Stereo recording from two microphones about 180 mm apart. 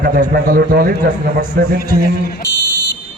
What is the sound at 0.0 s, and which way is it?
A man's voice, 50° right (ahead or behind).